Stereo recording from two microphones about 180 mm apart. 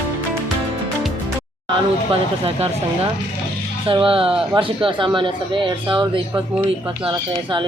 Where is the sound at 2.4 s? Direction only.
35° right (ahead or behind).